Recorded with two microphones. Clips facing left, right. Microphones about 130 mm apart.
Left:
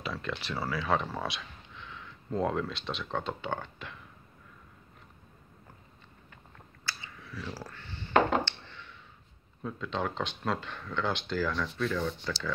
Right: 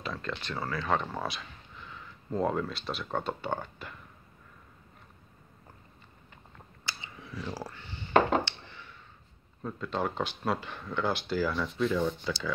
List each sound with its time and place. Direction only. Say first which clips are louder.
0.0 s speech: even; 5° left (ahead or behind)
6.9 s a sound: even; 20° right (ahead or behind)
9.6 s speech: right 1 dB; 5° right (ahead or behind); by 12.5 s 20° right (ahead or behind)